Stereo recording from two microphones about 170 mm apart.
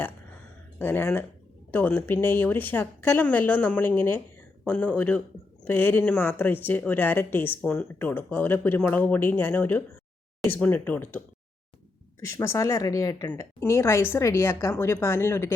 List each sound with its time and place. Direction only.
0.8 s speech: 10° left (ahead or behind)
12.3 s speech: 15° left (ahead or behind)